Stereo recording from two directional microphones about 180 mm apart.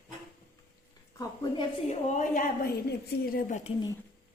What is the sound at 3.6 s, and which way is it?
Speech, 25° left (ahead or behind).